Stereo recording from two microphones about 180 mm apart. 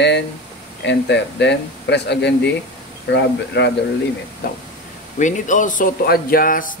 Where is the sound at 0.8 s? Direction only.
75° left (ahead or behind).